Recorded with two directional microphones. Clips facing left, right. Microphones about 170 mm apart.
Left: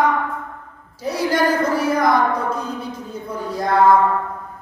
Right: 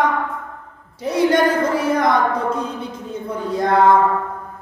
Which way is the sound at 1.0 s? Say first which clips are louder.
Right 3 dB; 25° right (ahead or behind).